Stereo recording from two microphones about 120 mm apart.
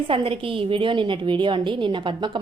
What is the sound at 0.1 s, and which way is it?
A woman's voice, 50° right (ahead or behind).